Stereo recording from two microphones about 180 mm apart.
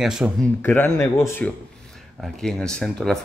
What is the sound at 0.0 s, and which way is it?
Speech, centre (ahead or behind).